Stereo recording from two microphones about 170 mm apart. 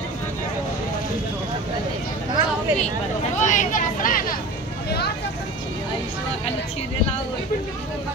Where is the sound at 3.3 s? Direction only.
45° left (ahead or behind).